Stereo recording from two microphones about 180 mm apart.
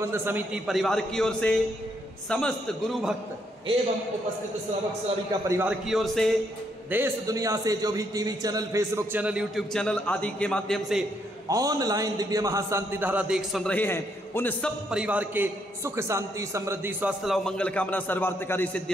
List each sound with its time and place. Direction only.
0.0 s a man's voice: 10° right (ahead or behind)
5.5 s a man's voice: 10° right (ahead or behind)
6.9 s a man's voice: 15° right (ahead or behind)
11.4 s a man's voice: 20° right (ahead or behind); by 13.7 s centre (ahead or behind)
13.7 s a man's voice: 10° left (ahead or behind)
14.9 s a man's voice: 5° right (ahead or behind)
17.2 s a man's voice: centre (ahead or behind)